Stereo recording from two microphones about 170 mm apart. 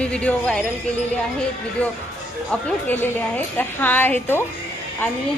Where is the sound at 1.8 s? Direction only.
10° left (ahead or behind).